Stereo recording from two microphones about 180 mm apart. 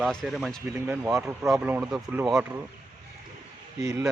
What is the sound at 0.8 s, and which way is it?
Speech, 10° right (ahead or behind).